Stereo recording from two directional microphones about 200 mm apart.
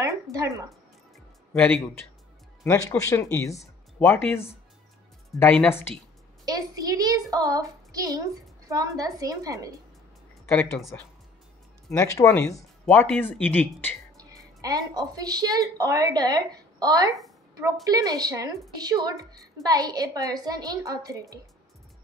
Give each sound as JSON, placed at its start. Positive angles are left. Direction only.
{"t": 0.0, "sound": "speech", "side_deg": -15}
{"t": 2.6, "sound": "speech", "side_deg": 10}
{"t": 6.4, "sound": "speech", "side_deg": -20}
{"t": 10.5, "sound": "speech", "side_deg": 10}
{"t": 11.9, "sound": "speech", "side_deg": 15}
{"t": 14.1, "sound": "a woman's voice", "side_deg": -15}